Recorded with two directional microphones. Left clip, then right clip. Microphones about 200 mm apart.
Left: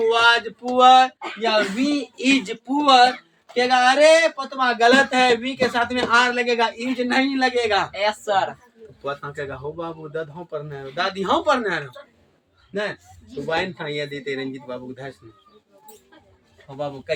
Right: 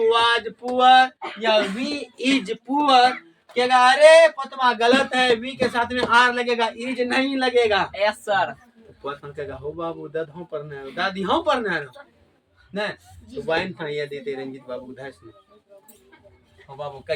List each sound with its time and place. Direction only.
0.0 s a sound: 15° left (ahead or behind)
1.4 s speech: 10° left (ahead or behind)
3.5 s speech: 10° left (ahead or behind)
7.9 s speech: 10° left (ahead or behind)
13.4 s speech: 20° left (ahead or behind)
16.7 s speech: 20° left (ahead or behind)